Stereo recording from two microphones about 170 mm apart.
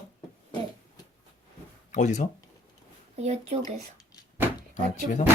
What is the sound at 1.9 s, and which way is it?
Speech, 45° left (ahead or behind).